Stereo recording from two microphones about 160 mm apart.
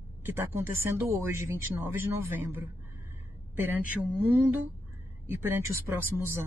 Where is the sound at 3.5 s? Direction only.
10° right (ahead or behind).